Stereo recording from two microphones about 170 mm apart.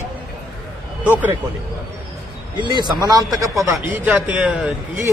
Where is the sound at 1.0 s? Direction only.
10° right (ahead or behind).